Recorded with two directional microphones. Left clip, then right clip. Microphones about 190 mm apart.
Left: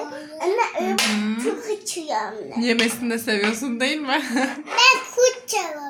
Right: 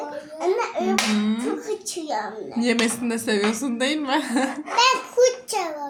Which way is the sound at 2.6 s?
15° right (ahead or behind).